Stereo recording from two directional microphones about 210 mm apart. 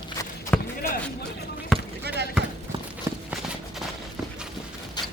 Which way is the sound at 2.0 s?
55° right (ahead or behind).